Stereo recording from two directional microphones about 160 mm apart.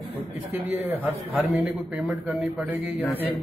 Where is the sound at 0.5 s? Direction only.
10° right (ahead or behind).